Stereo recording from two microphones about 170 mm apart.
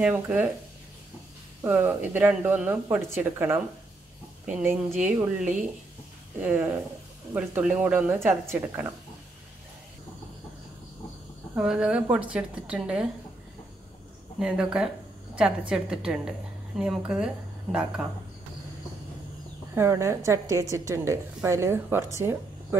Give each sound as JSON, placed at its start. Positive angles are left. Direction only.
{"t": 0.0, "sound": "speech", "side_deg": -10}
{"t": 1.6, "sound": "speech", "side_deg": -15}
{"t": 11.5, "sound": "speech", "side_deg": -5}
{"t": 14.4, "sound": "a woman's voice", "side_deg": -5}
{"t": 19.7, "sound": "speech", "side_deg": -15}